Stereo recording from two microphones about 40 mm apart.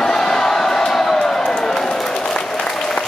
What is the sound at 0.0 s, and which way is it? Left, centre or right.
Crowd, centre.